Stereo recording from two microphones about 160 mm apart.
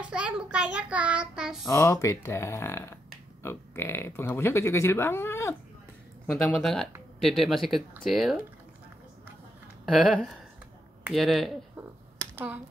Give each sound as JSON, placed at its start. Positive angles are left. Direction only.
{"t": 0.0, "sound": "a child's voice", "side_deg": -5}
{"t": 1.7, "sound": "speech", "side_deg": 20}
{"t": 6.3, "sound": "speech", "side_deg": 5}
{"t": 11.1, "sound": "speech", "side_deg": 0}
{"t": 11.7, "sound": "finger snapping", "side_deg": -15}